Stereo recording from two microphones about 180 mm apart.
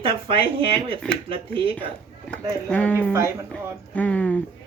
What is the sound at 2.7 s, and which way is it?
Speech, 10° left (ahead or behind).